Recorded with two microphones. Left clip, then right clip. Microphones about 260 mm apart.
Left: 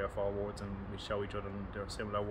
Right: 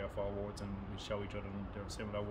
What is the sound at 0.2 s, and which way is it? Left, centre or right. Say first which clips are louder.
Speech: left 4 dB; centre.